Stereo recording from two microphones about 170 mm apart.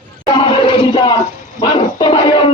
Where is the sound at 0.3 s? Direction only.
30° left (ahead or behind).